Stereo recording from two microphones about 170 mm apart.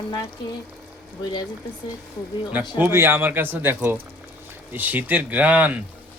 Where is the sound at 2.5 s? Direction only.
10° right (ahead or behind).